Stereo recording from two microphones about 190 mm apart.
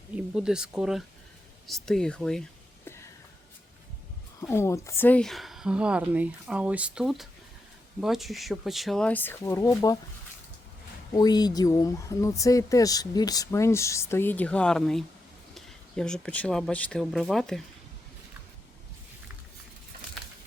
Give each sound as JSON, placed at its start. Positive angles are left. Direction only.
{"t": 0.2, "sound": "speech", "side_deg": -5}
{"t": 2.8, "sound": "a sound", "side_deg": 15}
{"t": 4.4, "sound": "speech", "side_deg": 15}
{"t": 11.1, "sound": "speech", "side_deg": 20}